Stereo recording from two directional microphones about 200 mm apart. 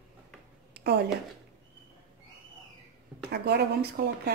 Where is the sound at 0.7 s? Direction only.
55° right (ahead or behind).